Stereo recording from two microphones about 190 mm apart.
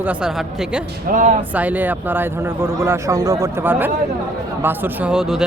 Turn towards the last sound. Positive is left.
turn(degrees=-5)  # may be behind; listen again after turning